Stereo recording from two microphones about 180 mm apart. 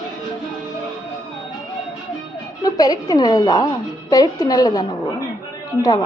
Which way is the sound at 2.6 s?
20° left (ahead or behind).